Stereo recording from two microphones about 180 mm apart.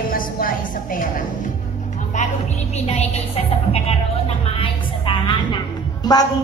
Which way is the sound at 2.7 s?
35° left (ahead or behind).